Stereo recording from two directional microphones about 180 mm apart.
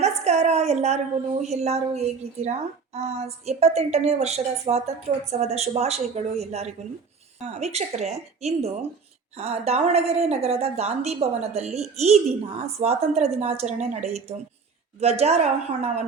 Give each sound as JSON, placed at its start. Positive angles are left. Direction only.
{"t": 0.0, "sound": "a woman's voice", "side_deg": -35}